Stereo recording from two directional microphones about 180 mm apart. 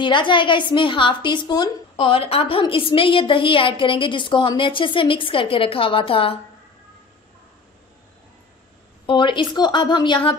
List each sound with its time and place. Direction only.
0.0 s a woman's voice: 25° left (ahead or behind)
9.0 s a woman's voice: 25° left (ahead or behind)